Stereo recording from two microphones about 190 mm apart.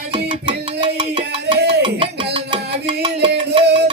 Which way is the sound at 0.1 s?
25° right (ahead or behind).